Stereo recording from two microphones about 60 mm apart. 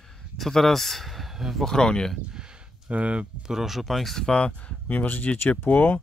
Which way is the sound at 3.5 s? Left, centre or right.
Centre.